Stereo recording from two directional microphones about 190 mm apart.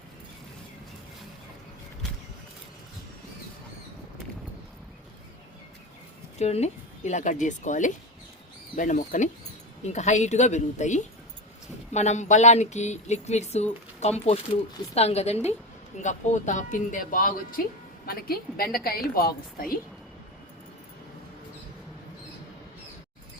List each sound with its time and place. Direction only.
6.4 s speech: 35° left (ahead or behind); by 19.7 s 50° left (ahead or behind)